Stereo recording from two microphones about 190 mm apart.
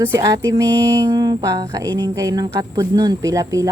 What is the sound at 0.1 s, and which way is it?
Speech, 15° right (ahead or behind).